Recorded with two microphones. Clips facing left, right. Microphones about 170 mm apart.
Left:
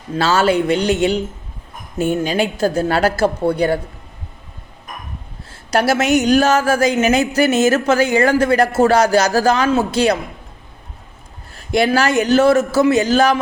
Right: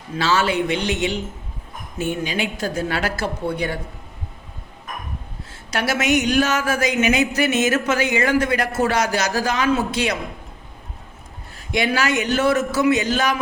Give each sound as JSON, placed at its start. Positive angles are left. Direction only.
{"t": 0.3, "sound": "speech", "side_deg": 40}
{"t": 2.0, "sound": "speech", "side_deg": 45}
{"t": 5.7, "sound": "speech", "side_deg": 35}
{"t": 11.7, "sound": "speech", "side_deg": 35}